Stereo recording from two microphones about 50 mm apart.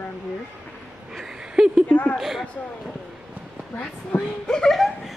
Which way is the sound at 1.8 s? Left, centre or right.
Left.